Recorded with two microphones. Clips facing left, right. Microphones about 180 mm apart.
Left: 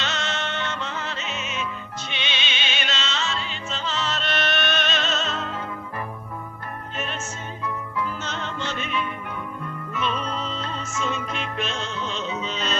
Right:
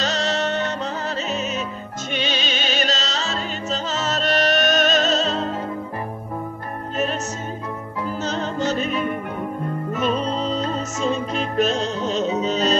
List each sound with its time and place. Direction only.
0.0 s music: 35° right (ahead or behind)
7.6 s music: 40° right (ahead or behind)